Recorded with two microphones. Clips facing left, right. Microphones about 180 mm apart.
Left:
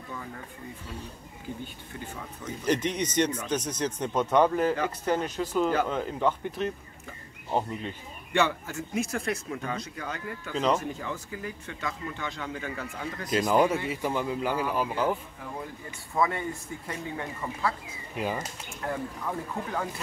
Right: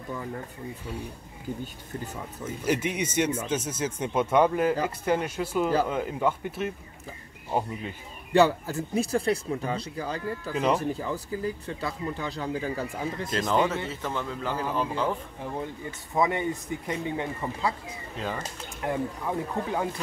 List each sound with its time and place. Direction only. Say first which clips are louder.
2.6 s speech: even; 10° right (ahead or behind)
8.3 s speech: right 6 dB; 35° right (ahead or behind)
10.5 s speech: right 1 dB; 10° right (ahead or behind)
10.8 s speech: right 5 dB; 35° right (ahead or behind)
13.3 s a man's voice: left 3 dB; 10° left (ahead or behind)
15.4 s speech: right 5 dB; 25° right (ahead or behind)
18.1 s speech: left 2 dB; 15° left (ahead or behind)
18.8 s speech: right 4 dB; 20° right (ahead or behind)